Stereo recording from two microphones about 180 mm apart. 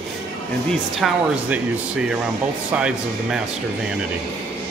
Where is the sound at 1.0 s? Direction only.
5° right (ahead or behind).